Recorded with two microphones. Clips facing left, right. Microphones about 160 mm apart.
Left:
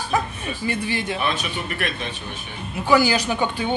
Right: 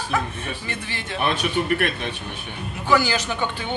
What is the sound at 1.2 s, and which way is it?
Speech, 60° right (ahead or behind).